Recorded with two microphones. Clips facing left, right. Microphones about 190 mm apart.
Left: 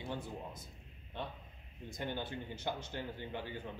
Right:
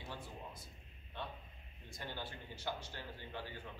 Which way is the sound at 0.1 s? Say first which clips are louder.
Left 6 dB; 20° left (ahead or behind).